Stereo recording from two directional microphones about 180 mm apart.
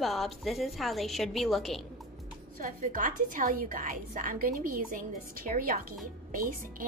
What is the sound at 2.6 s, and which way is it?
A woman's voice, 45° right (ahead or behind).